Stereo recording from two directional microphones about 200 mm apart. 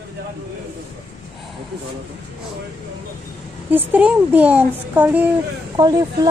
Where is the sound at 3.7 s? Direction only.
10° right (ahead or behind).